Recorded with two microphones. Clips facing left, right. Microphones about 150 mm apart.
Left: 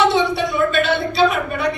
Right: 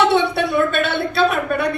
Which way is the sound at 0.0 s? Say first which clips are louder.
Even; 60° right (ahead or behind).